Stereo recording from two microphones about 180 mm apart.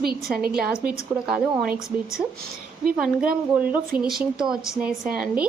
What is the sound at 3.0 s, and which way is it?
Speech, 5° right (ahead or behind).